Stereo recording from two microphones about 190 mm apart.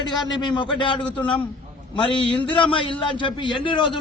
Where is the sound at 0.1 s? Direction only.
25° left (ahead or behind).